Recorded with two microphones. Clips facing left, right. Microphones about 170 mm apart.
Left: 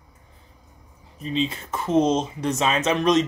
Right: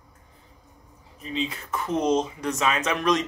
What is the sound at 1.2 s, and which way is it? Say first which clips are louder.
Speech: left 5 dB; 25° left (ahead or behind).